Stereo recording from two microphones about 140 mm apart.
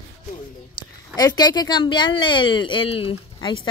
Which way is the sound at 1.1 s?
30° left (ahead or behind).